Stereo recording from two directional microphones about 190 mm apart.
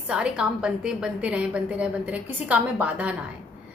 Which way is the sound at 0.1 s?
5° right (ahead or behind).